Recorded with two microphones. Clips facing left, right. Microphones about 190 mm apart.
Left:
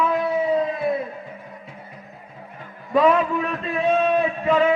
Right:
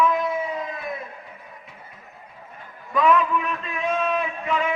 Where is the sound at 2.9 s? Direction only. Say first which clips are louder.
Left 2 dB; 35° left (ahead or behind).